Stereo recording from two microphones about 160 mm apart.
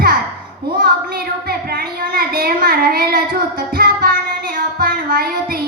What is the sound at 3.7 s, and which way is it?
Child singing, 65° right (ahead or behind).